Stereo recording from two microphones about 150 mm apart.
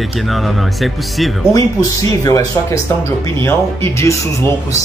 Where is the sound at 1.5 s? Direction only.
25° left (ahead or behind).